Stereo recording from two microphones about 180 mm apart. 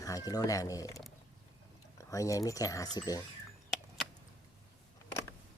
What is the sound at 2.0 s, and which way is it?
Speech, 20° left (ahead or behind).